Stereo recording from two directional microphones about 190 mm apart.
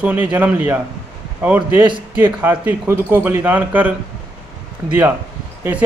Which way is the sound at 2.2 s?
10° right (ahead or behind).